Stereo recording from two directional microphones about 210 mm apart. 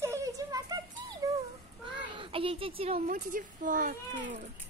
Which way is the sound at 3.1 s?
40° right (ahead or behind).